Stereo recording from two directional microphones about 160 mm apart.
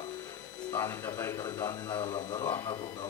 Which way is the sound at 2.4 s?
20° left (ahead or behind).